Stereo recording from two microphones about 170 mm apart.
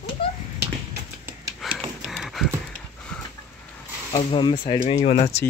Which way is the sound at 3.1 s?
5° left (ahead or behind).